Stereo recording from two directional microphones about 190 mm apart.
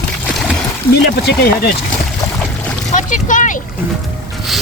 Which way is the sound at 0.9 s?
55° left (ahead or behind).